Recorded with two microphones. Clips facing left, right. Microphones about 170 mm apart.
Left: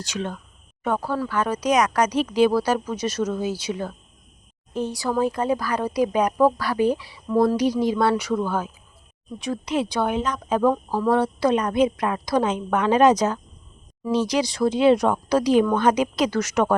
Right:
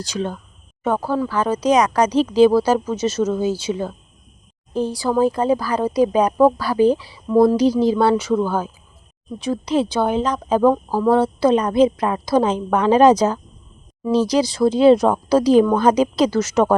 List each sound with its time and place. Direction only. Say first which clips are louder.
0.0 s speech: right 4 dB; 35° right (ahead or behind)